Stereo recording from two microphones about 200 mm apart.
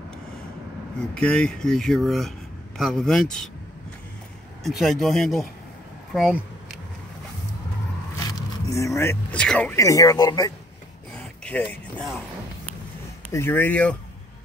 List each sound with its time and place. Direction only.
0.9 s speech: 5° left (ahead or behind)
4.6 s speech: centre (ahead or behind)
6.1 s a sound: centre (ahead or behind)
8.6 s speech: 15° left (ahead or behind)
11.4 s speech: 5° left (ahead or behind)
13.3 s speech: 10° left (ahead or behind)